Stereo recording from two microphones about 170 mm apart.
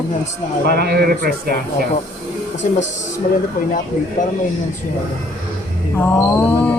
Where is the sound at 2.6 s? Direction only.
50° left (ahead or behind).